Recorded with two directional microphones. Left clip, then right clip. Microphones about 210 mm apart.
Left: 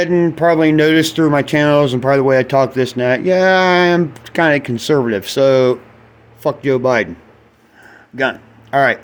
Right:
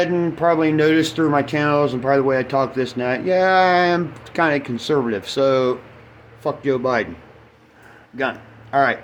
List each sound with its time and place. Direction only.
0.0 s a man's voice: 45° left (ahead or behind)
8.1 s speech: 40° left (ahead or behind)